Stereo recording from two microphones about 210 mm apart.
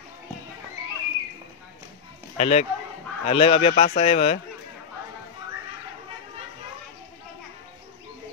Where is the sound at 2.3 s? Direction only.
30° left (ahead or behind).